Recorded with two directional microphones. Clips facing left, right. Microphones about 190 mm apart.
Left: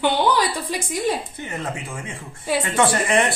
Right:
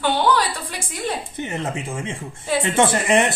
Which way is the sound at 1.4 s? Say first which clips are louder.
Right 3 dB; 25° right (ahead or behind).